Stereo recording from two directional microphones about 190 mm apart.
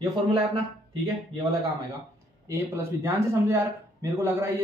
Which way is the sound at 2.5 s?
15° right (ahead or behind).